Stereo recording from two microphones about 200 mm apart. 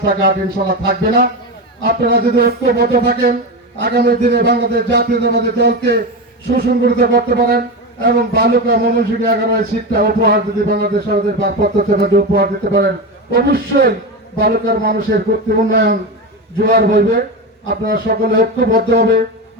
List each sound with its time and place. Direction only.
0.0 s a man's voice: 50° right (ahead or behind)